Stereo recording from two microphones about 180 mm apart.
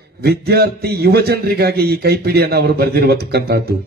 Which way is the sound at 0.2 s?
60° right (ahead or behind).